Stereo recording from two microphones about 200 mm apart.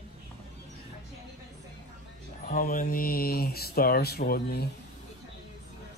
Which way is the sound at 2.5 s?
45° left (ahead or behind).